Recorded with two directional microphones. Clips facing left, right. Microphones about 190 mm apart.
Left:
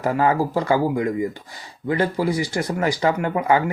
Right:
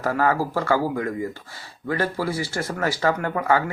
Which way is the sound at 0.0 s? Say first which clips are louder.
Left 2 dB; 15° left (ahead or behind).